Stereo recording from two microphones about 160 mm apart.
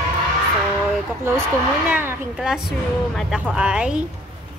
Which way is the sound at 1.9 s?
10° right (ahead or behind).